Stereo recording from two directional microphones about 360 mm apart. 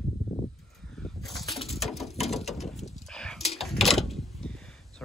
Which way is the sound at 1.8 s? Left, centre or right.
Centre.